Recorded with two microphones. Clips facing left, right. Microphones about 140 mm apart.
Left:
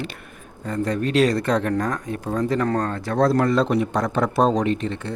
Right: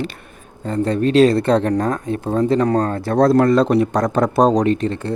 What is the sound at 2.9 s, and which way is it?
Speech, 40° right (ahead or behind).